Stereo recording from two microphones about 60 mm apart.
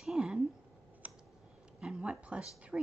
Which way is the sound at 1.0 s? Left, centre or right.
Right.